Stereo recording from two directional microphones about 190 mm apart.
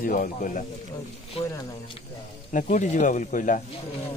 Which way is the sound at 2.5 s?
40° left (ahead or behind).